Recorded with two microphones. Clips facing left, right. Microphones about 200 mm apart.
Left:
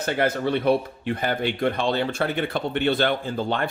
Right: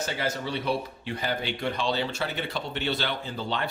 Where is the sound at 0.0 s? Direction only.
55° left (ahead or behind).